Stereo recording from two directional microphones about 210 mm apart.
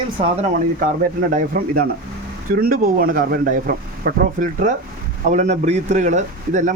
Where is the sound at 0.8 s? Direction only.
40° right (ahead or behind).